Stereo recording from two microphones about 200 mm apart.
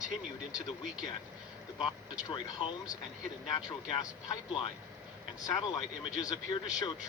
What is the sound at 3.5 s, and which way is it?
Speech, 20° left (ahead or behind).